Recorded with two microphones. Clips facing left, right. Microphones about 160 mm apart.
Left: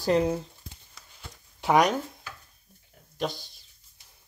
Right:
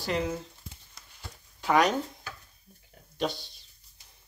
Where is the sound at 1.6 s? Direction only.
15° left (ahead or behind).